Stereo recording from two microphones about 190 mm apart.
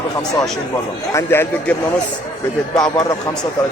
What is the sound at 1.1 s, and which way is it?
Speech, 10° left (ahead or behind).